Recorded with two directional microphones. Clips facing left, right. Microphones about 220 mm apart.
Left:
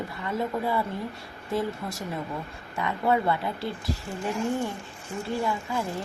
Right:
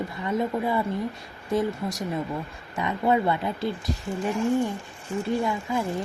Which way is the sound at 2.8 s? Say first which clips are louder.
Right 2 dB; 20° right (ahead or behind).